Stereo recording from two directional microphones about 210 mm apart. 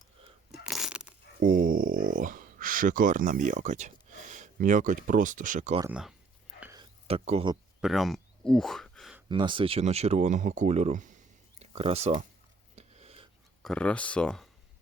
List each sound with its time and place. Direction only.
0.6 s coin: centre (ahead or behind)
1.4 s speech: 40° right (ahead or behind)
5.8 s speech: 5° right (ahead or behind)
6.6 s a sound: 15° right (ahead or behind)
7.1 s speech: 30° right (ahead or behind)
7.8 s a sound: centre (ahead or behind)
9.3 s speech: 25° right (ahead or behind)
12.7 s a sound: 30° right (ahead or behind)
13.6 s speech: 5° left (ahead or behind)